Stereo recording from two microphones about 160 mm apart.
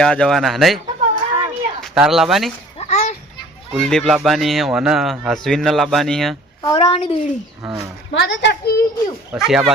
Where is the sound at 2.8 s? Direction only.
45° left (ahead or behind).